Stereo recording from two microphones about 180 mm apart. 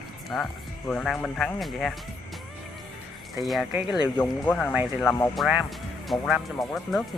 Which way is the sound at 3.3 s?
Centre (ahead or behind).